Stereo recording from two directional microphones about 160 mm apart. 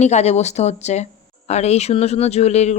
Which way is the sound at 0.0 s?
45° left (ahead or behind).